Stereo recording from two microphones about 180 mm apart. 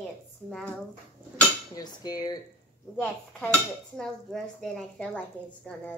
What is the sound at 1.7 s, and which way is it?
Speech, 20° left (ahead or behind).